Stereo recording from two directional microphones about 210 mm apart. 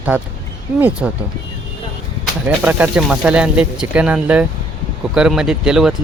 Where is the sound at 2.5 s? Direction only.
5° right (ahead or behind).